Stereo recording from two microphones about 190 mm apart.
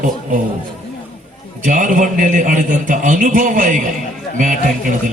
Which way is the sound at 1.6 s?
45° right (ahead or behind).